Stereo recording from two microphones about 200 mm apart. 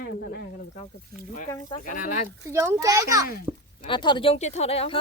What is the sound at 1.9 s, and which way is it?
Speech, 40° left (ahead or behind).